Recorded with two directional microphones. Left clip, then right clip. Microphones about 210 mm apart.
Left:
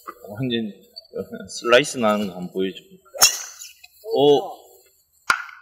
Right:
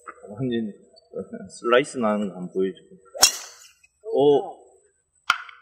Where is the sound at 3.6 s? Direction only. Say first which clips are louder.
Left 5 dB; 45° left (ahead or behind).